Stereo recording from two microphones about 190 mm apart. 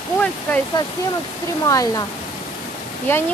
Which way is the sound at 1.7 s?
20° left (ahead or behind).